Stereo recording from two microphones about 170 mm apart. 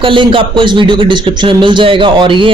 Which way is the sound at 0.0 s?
30° right (ahead or behind).